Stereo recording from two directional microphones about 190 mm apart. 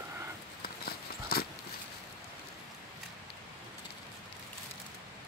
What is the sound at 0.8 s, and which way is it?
Horse, 55° left (ahead or behind).